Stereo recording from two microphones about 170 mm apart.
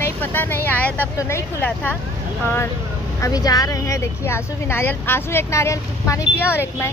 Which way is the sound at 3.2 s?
20° left (ahead or behind).